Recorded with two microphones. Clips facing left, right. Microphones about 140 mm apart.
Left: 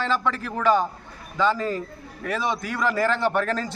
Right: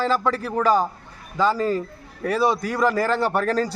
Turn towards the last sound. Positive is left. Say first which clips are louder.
# right 2 dB
turn(degrees=-40)  # may be behind; listen again after turning